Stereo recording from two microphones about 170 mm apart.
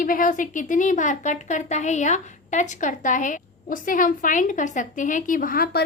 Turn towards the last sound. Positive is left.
turn(degrees=60)  # may be behind; listen again after turning